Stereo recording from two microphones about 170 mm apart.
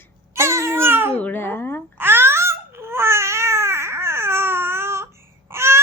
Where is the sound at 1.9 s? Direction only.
15° right (ahead or behind).